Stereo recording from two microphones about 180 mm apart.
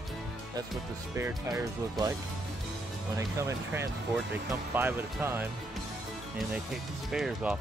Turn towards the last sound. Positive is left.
turn(degrees=-5)  # may be behind; listen again after turning